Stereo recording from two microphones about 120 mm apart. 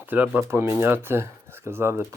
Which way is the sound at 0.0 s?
15° right (ahead or behind).